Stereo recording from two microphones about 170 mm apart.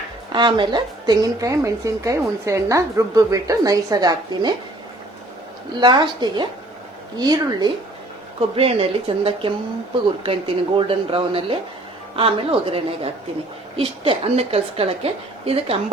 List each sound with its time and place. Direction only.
0.3 s a woman's voice: 25° right (ahead or behind)
5.8 s a woman's voice: 25° right (ahead or behind)
8.4 s a woman's voice: 35° right (ahead or behind)